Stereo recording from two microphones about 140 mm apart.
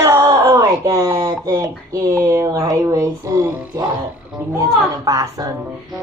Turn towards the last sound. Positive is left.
turn(degrees=-25)  # may be behind; listen again after turning